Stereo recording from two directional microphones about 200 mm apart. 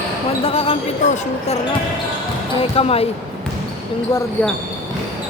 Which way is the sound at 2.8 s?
30° left (ahead or behind).